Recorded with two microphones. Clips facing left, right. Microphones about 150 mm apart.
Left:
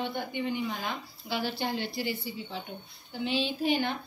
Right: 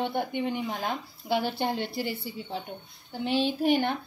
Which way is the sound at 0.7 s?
45° right (ahead or behind).